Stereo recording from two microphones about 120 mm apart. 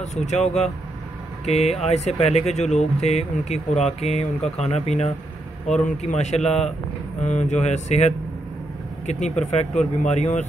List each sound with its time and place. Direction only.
0.0 s speech: 70° left (ahead or behind)
5.9 s speech: 80° left; by 6.7 s 65° left (ahead or behind)
7.2 s speech: 75° left (ahead or behind)